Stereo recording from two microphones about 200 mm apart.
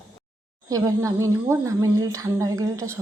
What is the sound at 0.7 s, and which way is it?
Speech, 15° right (ahead or behind).